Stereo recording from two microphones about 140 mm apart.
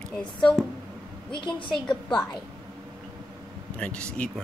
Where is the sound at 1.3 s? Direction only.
35° left (ahead or behind).